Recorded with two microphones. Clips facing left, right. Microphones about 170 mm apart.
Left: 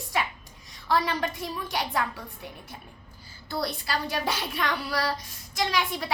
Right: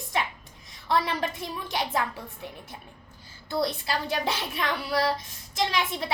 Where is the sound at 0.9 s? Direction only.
25° right (ahead or behind).